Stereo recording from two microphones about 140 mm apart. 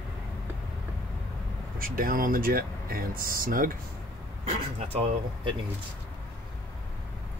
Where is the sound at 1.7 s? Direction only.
90° right.